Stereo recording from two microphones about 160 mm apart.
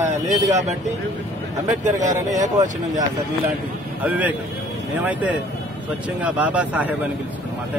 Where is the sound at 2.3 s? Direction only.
50° right (ahead or behind).